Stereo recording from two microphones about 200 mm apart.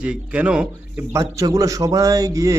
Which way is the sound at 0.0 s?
5° right (ahead or behind).